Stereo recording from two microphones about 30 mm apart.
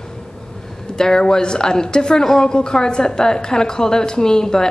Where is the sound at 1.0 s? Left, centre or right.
Left.